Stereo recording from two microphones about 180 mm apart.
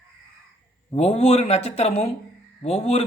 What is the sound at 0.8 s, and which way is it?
A man's voice, 35° left (ahead or behind).